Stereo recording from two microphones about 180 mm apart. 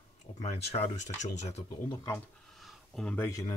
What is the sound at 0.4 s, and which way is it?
Speech, 35° left (ahead or behind).